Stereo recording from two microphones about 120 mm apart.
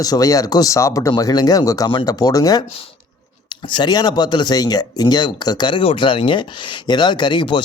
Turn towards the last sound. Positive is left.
turn(degrees=40)  # may be behind; listen again after turning